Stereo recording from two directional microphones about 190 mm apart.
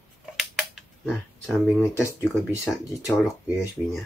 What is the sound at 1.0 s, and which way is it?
Speech, centre (ahead or behind).